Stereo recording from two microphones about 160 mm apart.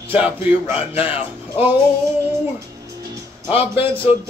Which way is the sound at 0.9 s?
35° left (ahead or behind).